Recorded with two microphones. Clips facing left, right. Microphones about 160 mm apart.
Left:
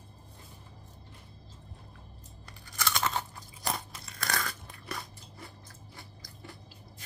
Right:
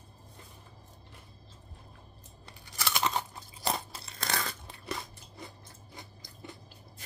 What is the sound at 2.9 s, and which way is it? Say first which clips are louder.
Crunch: right 2 dB; 15° right (ahead or behind).